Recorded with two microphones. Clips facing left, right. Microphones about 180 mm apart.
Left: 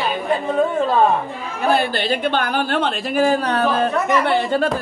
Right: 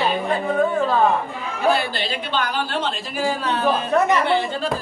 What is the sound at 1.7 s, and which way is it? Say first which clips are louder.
A woman's voice: left 5 dB; 55° left (ahead or behind).